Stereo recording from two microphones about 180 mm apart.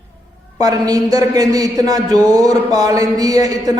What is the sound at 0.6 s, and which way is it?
A man's voice, 20° right (ahead or behind).